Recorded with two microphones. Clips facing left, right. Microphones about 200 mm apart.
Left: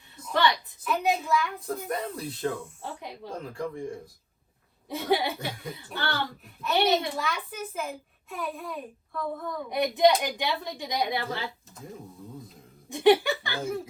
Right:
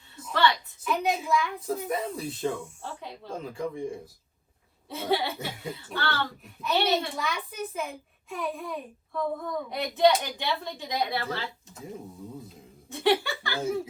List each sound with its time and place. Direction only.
0.9 s a child's voice: centre (ahead or behind)
2.8 s a woman's voice: 15° left (ahead or behind)
3.3 s a child's voice: centre (ahead or behind)
4.9 s a woman's voice: 15° left (ahead or behind)
7.2 s a child's voice: centre (ahead or behind)
9.6 s a woman's voice: 15° left (ahead or behind)
12.9 s a woman's voice: 15° left (ahead or behind)
13.6 s a child's voice: centre (ahead or behind)